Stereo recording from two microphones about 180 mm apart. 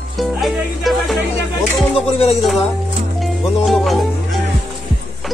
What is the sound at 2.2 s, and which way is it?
Speech, 35° left (ahead or behind).